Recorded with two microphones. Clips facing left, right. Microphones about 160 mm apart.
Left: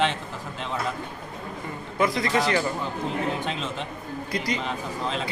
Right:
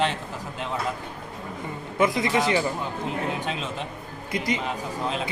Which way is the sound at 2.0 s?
20° right (ahead or behind).